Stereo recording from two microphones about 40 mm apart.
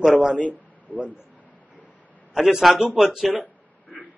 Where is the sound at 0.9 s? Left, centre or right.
Left.